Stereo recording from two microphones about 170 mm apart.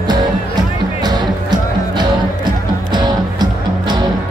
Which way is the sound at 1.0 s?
25° right (ahead or behind).